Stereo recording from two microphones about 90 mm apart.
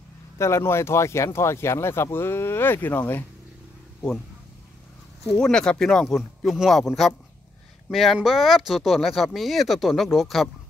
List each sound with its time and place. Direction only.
0.4 s speech: 30° left (ahead or behind)
5.4 s speech: 10° left (ahead or behind)
7.9 s speech: centre (ahead or behind)